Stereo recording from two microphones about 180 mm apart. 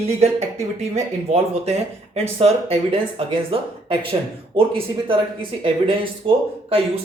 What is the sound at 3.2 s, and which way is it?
Speech, 30° right (ahead or behind).